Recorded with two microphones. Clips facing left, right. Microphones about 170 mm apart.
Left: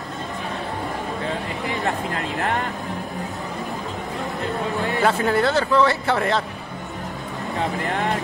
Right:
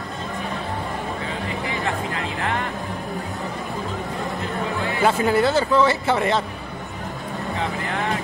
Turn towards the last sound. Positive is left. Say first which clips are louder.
# right 1 dB
turn(degrees=0)  # may be behind; listen again after turning